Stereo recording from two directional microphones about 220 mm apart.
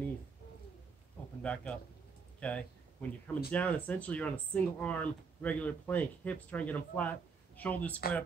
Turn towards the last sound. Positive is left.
turn(degrees=5)  # may be behind; listen again after turning